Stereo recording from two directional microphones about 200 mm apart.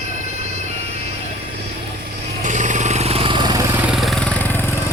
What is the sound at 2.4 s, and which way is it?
Vehicle, 40° right (ahead or behind).